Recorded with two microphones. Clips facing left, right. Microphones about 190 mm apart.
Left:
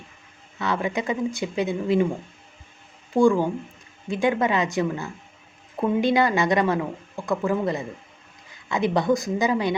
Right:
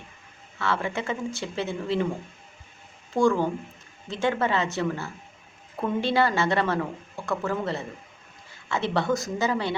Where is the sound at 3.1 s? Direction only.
15° left (ahead or behind).